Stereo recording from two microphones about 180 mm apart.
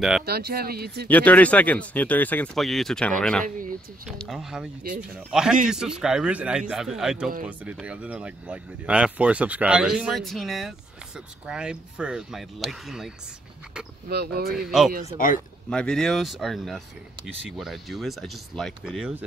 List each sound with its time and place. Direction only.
0.2 s speech: 60° right (ahead or behind)
1.0 s speech: 10° left (ahead or behind)
14.0 s speech: 60° right (ahead or behind)
14.5 s speech: centre (ahead or behind)
15.1 s speech: 50° left (ahead or behind)
15.7 s speech: 5° left (ahead or behind)